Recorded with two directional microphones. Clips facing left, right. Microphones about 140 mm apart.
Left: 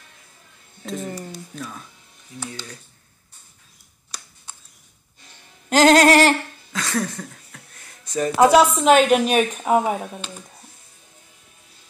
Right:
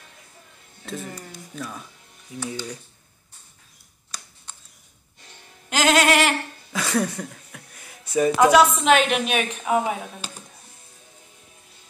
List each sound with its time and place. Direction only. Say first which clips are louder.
1.6 s speech: right 2 dB; centre (ahead or behind)
2.5 s speech: right 5 dB; 15° right (ahead or behind)
4.5 s a sound: left 2 dB; 10° left (ahead or behind)
5.7 s a woman's voice: left 6 dB; 35° left (ahead or behind)
6.7 s a sound: right 1 dB; 10° right (ahead or behind)
8.4 s a woman's voice: left 3 dB; 30° left (ahead or behind)
10.2 s speech: left 2 dB; 5° right (ahead or behind)